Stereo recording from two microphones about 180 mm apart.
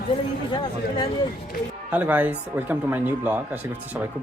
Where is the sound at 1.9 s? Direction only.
10° right (ahead or behind).